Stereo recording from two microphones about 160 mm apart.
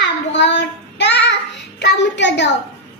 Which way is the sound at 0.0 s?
90° left.